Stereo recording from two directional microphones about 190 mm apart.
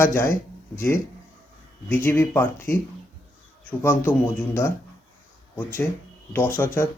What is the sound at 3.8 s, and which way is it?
Speech, 10° left (ahead or behind).